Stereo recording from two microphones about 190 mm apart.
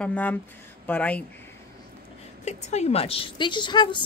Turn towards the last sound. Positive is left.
turn(degrees=25)  # may be behind; listen again after turning